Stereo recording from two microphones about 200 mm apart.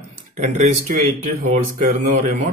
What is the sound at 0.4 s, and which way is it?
Speech, 35° right (ahead or behind).